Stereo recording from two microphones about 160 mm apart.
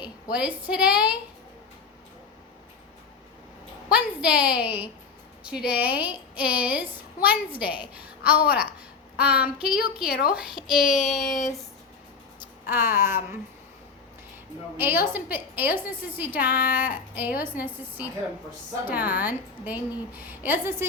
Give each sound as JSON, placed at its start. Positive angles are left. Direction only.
{"t": 0.3, "sound": "a woman's voice", "side_deg": -10}
{"t": 3.8, "sound": "a woman's voice", "side_deg": -10}
{"t": 9.1, "sound": "child singing", "side_deg": -10}
{"t": 9.6, "sound": "speech", "side_deg": -5}
{"t": 10.1, "sound": "a woman's voice", "side_deg": 70}
{"t": 10.3, "sound": "speech", "side_deg": -5}
{"t": 13.0, "sound": "a woman's voice", "side_deg": -15}
{"t": 14.8, "sound": "a woman's voice", "side_deg": -15}
{"t": 16.6, "sound": "speech", "side_deg": 60}
{"t": 17.2, "sound": "a woman's voice", "side_deg": -10}